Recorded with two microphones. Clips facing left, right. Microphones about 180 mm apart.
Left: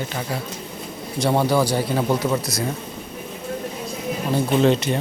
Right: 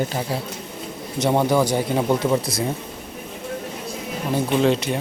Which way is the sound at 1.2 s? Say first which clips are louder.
Right 1 dB; 15° right (ahead or behind).